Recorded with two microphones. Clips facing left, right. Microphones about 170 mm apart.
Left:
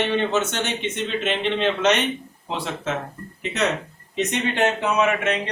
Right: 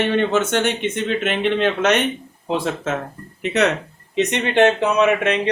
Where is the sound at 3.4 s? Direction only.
65° right (ahead or behind).